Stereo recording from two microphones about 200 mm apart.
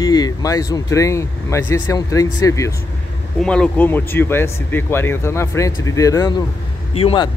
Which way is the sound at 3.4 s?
5° left (ahead or behind).